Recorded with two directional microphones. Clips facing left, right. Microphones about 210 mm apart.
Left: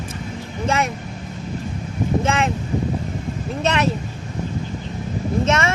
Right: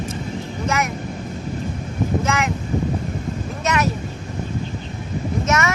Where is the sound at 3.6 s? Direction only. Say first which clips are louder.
Left 1 dB; 30° left (ahead or behind).